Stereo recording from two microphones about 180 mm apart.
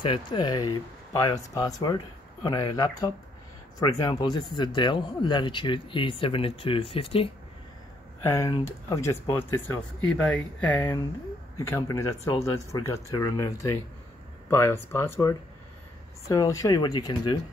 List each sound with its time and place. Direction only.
0.0 s speech: 25° left (ahead or behind)
8.2 s speech: 15° left (ahead or behind)